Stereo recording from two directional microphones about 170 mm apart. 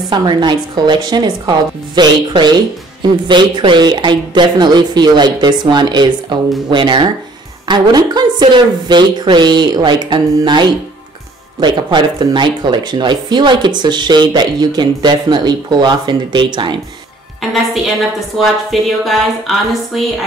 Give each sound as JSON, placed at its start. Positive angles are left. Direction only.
{"t": 0.1, "sound": "speech", "side_deg": -25}
{"t": 18.4, "sound": "speech", "side_deg": 0}